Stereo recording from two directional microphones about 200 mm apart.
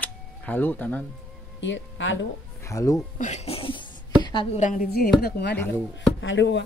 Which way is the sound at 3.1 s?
35° left (ahead or behind).